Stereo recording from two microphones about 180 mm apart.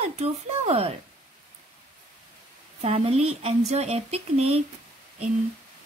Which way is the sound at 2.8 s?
35° right (ahead or behind).